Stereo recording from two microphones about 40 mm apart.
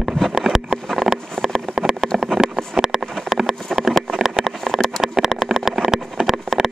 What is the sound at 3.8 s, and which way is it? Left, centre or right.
Vehicle, centre.